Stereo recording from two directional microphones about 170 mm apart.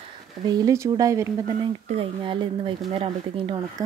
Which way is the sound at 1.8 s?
35° right (ahead or behind).